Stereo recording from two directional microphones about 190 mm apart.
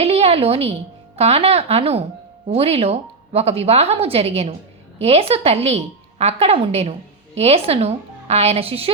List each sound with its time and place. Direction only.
0.0 s speech: 30° right (ahead or behind)